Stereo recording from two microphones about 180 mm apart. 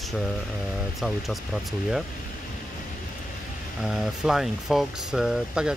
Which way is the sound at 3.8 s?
Centre (ahead or behind).